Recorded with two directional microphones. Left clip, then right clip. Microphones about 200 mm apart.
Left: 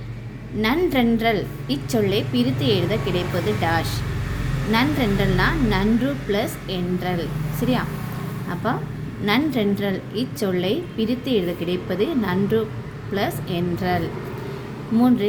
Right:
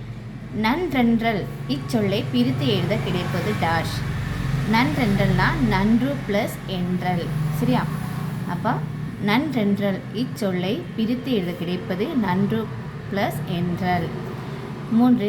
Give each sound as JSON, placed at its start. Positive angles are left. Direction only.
{"t": 0.6, "sound": "a woman's voice", "side_deg": 10}